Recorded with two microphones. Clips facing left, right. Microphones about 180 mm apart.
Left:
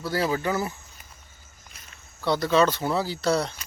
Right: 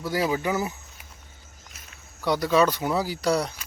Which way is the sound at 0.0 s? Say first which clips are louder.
Even; 15° right (ahead or behind).